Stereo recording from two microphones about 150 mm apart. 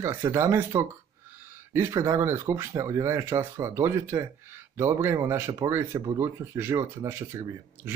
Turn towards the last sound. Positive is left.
turn(degrees=-20)  # may be behind; listen again after turning